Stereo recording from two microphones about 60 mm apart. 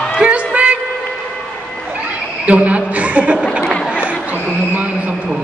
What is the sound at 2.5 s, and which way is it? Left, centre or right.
Chuckle, right.